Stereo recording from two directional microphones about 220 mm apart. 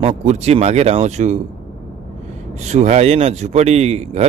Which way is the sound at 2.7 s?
30° right (ahead or behind).